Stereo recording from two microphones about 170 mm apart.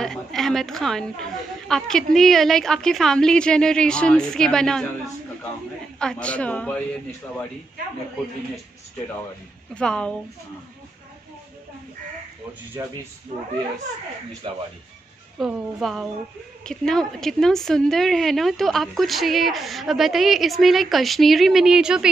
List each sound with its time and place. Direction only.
0.0 s a woman's voice: centre (ahead or behind)
5.9 s a man's voice: 5° left (ahead or behind)
9.8 s a woman's voice: 5° left (ahead or behind)
12.8 s speech: 20° right (ahead or behind)
15.3 s a woman's voice: centre (ahead or behind)